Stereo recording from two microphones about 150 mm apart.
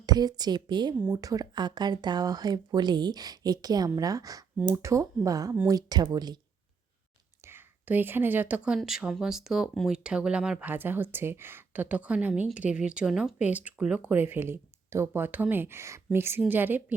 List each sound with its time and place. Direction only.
0.0 s speech: 25° right (ahead or behind)
0.9 s speech: 15° right (ahead or behind)
7.4 s speech: 15° right (ahead or behind)